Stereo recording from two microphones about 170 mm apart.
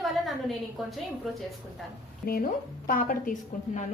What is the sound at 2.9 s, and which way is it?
Speech, 55° left (ahead or behind).